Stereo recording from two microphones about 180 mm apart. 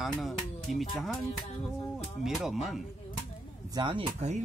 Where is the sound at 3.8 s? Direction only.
25° right (ahead or behind).